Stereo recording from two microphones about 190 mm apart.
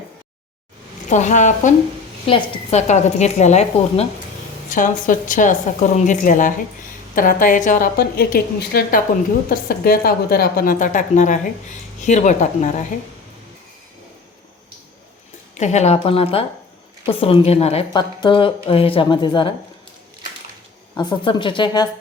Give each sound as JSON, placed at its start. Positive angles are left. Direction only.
{"t": 1.1, "sound": "a woman's voice", "side_deg": 40}
{"t": 15.5, "sound": "a woman's voice", "side_deg": 35}
{"t": 20.9, "sound": "a woman's voice", "side_deg": 25}